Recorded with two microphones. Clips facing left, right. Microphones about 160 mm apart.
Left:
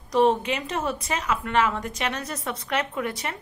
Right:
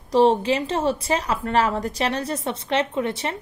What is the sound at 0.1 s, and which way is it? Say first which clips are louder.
A woman's voice: right 4 dB; 30° right (ahead or behind).